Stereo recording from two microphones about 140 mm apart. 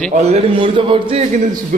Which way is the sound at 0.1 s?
50° right (ahead or behind).